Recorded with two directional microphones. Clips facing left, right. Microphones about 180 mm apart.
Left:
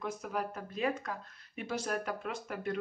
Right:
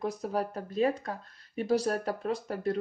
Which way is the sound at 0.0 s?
35° right (ahead or behind).